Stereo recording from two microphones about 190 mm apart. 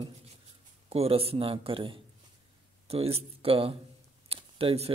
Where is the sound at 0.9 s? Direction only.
30° right (ahead or behind).